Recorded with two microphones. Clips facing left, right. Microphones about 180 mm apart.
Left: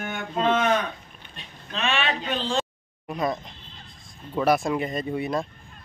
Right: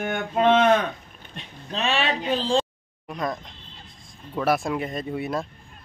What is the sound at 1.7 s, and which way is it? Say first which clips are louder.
Speech: right 2 dB; 35° right (ahead or behind).